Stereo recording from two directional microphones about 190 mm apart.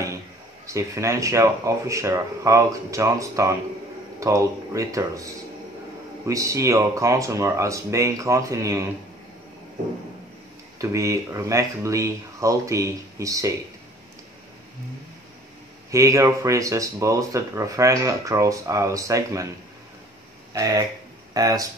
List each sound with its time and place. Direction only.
0.7 s speech: 15° right (ahead or behind)
10.8 s speech: 15° right (ahead or behind)
15.9 s speech: 15° right (ahead or behind)
20.5 s speech: 20° right (ahead or behind)